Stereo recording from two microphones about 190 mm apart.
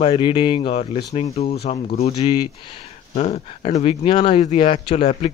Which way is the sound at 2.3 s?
20° left (ahead or behind).